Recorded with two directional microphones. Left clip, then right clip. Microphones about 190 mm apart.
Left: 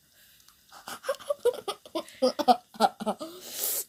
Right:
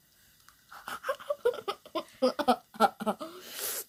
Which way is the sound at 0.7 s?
10° left (ahead or behind).